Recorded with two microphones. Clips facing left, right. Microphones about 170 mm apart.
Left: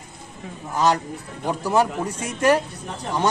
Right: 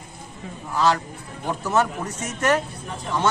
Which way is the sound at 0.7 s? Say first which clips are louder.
Left 1 dB; 20° left (ahead or behind).